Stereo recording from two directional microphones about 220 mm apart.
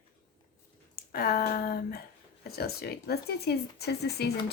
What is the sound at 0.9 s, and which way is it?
Speech, 45° left (ahead or behind).